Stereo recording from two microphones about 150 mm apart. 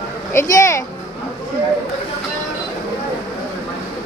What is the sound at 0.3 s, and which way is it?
Speech, 20° left (ahead or behind).